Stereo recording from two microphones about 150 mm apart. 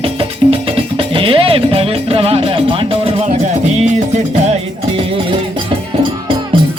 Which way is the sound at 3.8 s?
50° right (ahead or behind).